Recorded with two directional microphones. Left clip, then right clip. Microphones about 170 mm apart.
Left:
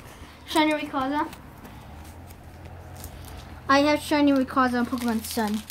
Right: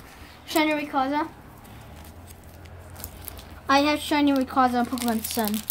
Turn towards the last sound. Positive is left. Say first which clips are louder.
# right 1 dB
turn(degrees=0)  # may be behind; listen again after turning